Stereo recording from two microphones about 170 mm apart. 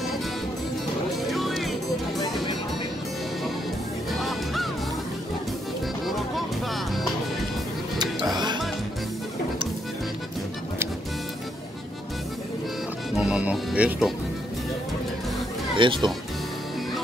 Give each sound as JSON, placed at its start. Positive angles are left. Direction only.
{"t": 1.3, "sound": "music", "side_deg": 0}
{"t": 4.1, "sound": "music", "side_deg": 0}
{"t": 6.0, "sound": "music", "side_deg": 0}
{"t": 8.4, "sound": "music", "side_deg": -25}
{"t": 13.2, "sound": "music", "side_deg": -5}
{"t": 15.7, "sound": "speech", "side_deg": -30}